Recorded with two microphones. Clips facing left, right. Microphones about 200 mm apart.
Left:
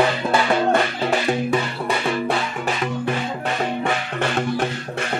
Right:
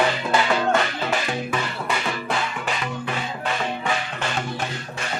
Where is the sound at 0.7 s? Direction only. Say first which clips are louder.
Left 3 dB; 35° left (ahead or behind).